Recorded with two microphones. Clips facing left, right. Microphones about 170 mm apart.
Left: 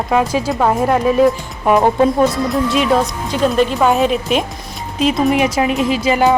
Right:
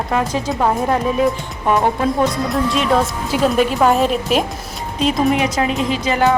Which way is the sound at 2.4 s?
Centre (ahead or behind).